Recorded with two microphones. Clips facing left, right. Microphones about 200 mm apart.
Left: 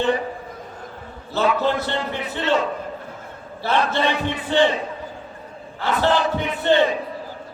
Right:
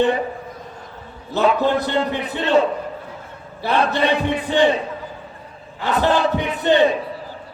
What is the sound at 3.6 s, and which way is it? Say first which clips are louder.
Battle cry: right 1 dB; 15° right (ahead or behind).